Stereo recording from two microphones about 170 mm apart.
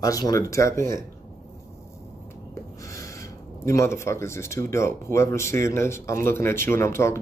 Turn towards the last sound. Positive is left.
turn(degrees=15)  # may be behind; listen again after turning